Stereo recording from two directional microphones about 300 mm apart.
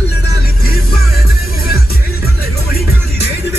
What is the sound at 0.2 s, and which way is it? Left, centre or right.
Music, left.